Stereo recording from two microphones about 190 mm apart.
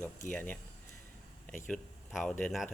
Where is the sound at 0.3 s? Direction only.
5° left (ahead or behind).